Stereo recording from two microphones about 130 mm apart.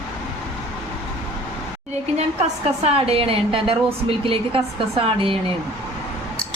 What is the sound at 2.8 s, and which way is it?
A woman's voice, 50° right (ahead or behind).